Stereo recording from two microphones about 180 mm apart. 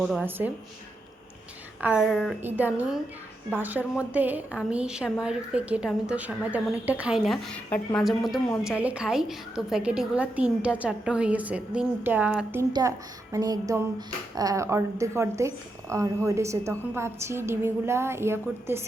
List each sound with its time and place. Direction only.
0.0 s a woman's voice: centre (ahead or behind)
0.3 s a woman's voice: 10° right (ahead or behind)
1.8 s a woman's voice: 10° right (ahead or behind)
2.6 s a woman's voice: 10° right (ahead or behind)
13.3 s music: 20° right (ahead or behind)
14.3 s a woman's voice: 20° right (ahead or behind)